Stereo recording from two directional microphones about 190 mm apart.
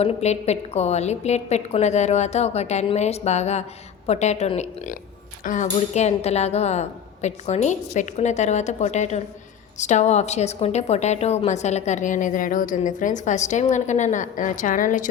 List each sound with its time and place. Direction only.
0.0 s a woman's voice: 35° left (ahead or behind)